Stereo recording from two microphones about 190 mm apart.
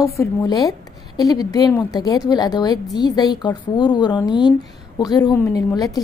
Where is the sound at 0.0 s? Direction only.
15° left (ahead or behind).